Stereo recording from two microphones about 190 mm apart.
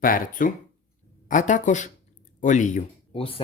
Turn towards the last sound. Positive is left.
turn(degrees=30)  # may be behind; listen again after turning